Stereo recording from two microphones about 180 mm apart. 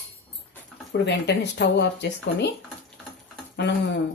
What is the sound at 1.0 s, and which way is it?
Speech, 70° left (ahead or behind).